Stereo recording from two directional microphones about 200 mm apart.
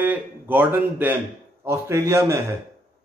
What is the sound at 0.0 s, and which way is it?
A man's voice, 10° right (ahead or behind).